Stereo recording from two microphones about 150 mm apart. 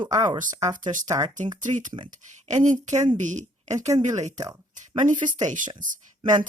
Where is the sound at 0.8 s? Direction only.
60° right (ahead or behind).